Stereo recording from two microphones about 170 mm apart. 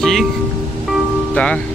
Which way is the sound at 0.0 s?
Centre (ahead or behind).